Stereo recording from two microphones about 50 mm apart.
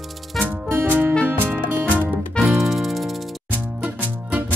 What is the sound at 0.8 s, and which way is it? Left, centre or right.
Music, right.